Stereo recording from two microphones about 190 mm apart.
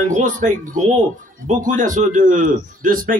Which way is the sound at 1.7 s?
45° right (ahead or behind).